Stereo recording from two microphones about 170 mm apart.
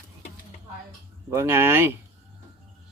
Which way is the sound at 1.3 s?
15° right (ahead or behind).